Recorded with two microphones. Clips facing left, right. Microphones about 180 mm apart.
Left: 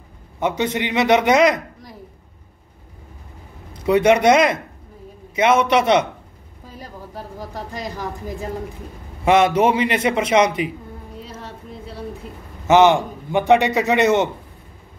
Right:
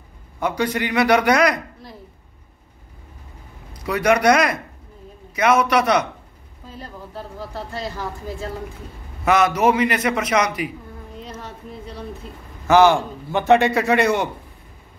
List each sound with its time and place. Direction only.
0.4 s a man's voice: 25° left (ahead or behind)
3.7 s a man's voice: 25° left (ahead or behind)
6.7 s a woman's voice: 10° left (ahead or behind)
9.2 s a man's voice: 25° left (ahead or behind)
12.6 s a man's voice: 20° left (ahead or behind)